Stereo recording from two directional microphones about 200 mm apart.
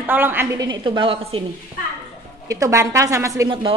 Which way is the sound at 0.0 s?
10° right (ahead or behind).